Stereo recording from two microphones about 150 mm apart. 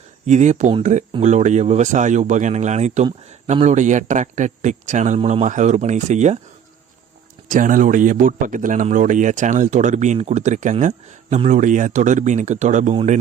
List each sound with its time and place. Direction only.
0.3 s speech: 50° right (ahead or behind)
7.4 s speech: 60° right (ahead or behind)